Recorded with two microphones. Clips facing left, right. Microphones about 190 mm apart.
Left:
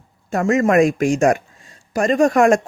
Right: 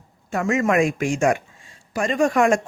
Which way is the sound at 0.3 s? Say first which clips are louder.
Left 4 dB; 40° left (ahead or behind).